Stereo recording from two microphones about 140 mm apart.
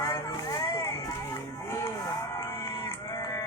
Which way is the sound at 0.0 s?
25° left (ahead or behind).